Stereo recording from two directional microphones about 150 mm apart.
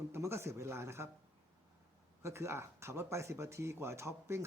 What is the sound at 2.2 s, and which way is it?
A man's voice, 20° right (ahead or behind).